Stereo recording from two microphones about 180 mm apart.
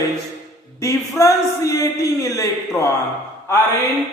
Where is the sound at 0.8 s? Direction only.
20° left (ahead or behind).